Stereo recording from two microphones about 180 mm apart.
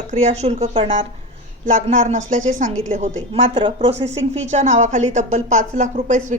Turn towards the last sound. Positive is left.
turn(degrees=-45)  # may be behind; listen again after turning